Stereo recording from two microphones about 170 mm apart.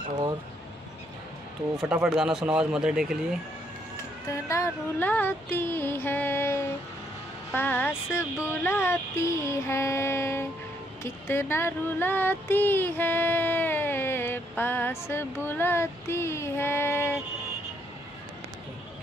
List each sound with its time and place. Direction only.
2.0 s a man's voice: 5° right (ahead or behind)
4.3 s female singing: 15° left (ahead or behind)
11.0 s speech: 15° left (ahead or behind)